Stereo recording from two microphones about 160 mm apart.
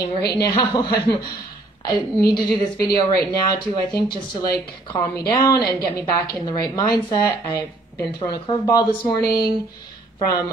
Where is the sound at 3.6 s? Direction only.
30° left (ahead or behind).